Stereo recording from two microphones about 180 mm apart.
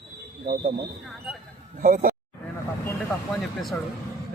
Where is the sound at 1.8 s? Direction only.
50° right (ahead or behind).